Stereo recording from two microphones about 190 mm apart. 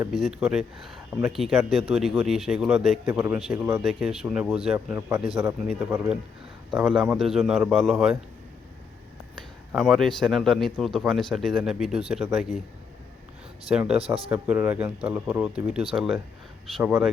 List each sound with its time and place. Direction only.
0.1 s a man's voice: centre (ahead or behind)
9.3 s a man's voice: centre (ahead or behind)
13.7 s a man's voice: 5° right (ahead or behind)
14.0 s speech: 30° right (ahead or behind)
14.3 s speech: 10° right (ahead or behind)